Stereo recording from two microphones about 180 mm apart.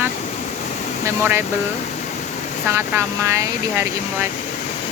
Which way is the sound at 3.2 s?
15° right (ahead or behind).